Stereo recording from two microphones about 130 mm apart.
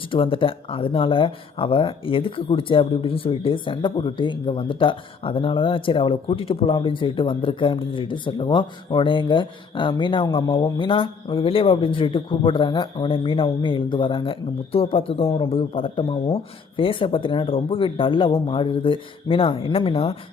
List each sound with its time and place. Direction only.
0.1 s speech: 40° left (ahead or behind)